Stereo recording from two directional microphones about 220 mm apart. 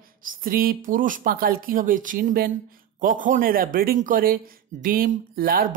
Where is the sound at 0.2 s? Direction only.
40° right (ahead or behind).